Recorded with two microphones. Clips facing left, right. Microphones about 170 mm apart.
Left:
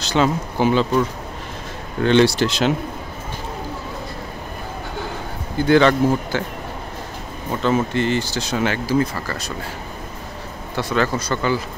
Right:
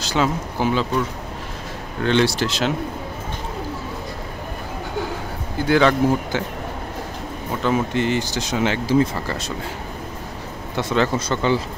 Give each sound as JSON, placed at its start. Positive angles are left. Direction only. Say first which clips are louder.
{"t": 0.0, "sound": "speech", "louder": "left 2 dB", "side_deg": -5}
{"t": 2.0, "sound": "speech", "louder": "left 4 dB", "side_deg": 0}
{"t": 5.7, "sound": "speech", "louder": "left 2 dB", "side_deg": -5}
{"t": 6.3, "sound": "speech", "louder": "left 1 dB", "side_deg": -20}
{"t": 7.6, "sound": "speech", "louder": "left 1 dB", "side_deg": -15}
{"t": 10.8, "sound": "speech", "louder": "right 1 dB", "side_deg": -20}